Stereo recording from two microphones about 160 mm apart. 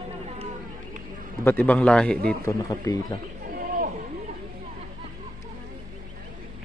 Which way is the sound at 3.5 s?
60° right (ahead or behind).